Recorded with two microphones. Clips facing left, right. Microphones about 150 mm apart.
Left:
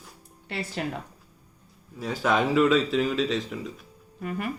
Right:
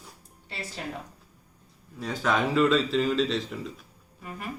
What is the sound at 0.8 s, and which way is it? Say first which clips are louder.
Speech: left 5 dB; 70° left (ahead or behind).